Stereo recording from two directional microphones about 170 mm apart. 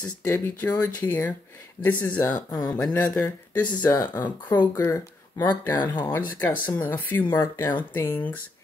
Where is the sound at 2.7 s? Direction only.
5° left (ahead or behind).